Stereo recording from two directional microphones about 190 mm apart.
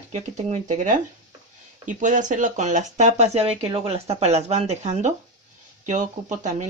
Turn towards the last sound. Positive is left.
turn(degrees=-40)  # may be behind; listen again after turning